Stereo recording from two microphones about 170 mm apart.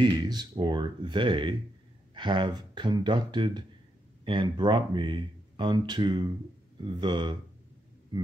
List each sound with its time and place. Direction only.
0.0 s speech: 25° right (ahead or behind)